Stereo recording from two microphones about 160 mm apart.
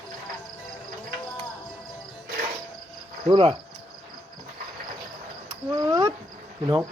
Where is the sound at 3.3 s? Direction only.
35° right (ahead or behind).